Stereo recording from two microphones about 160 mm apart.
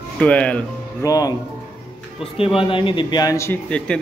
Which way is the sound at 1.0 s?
25° left (ahead or behind).